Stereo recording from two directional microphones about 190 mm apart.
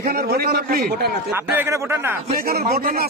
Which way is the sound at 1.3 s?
10° right (ahead or behind).